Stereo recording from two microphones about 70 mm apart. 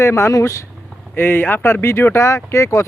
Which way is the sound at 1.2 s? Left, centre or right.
Left.